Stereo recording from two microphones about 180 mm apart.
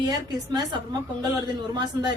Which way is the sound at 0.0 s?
20° right (ahead or behind).